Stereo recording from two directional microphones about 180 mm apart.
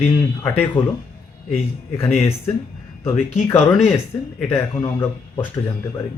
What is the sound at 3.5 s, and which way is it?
Speech, 40° left (ahead or behind).